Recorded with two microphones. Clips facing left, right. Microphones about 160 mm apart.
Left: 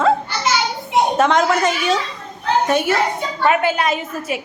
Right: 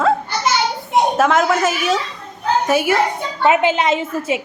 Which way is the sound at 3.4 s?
20° right (ahead or behind).